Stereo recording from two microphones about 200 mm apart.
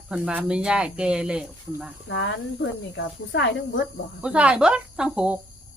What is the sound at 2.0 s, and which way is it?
Speech, 65° left (ahead or behind).